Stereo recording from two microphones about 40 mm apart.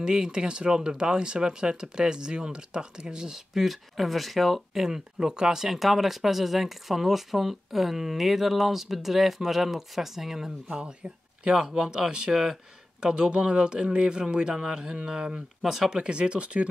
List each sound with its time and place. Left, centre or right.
0.0 s speech: centre
3.5 s speech: centre
4.8 s speech: centre
5.7 s speech: centre
10.7 s speech: right
11.5 s speech: centre
12.3 s speech: centre
13.0 s speech: right
15.6 s speech: centre
15.9 s speech: right